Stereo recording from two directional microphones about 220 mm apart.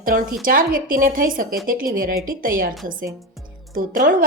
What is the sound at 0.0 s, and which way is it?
Speech, 40° right (ahead or behind).